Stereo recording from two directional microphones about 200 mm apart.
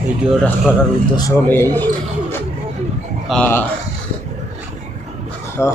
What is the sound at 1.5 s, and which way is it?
Speech, 10° left (ahead or behind).